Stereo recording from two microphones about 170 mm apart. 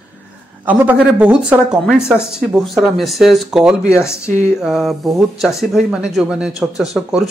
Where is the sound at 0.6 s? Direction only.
10° right (ahead or behind).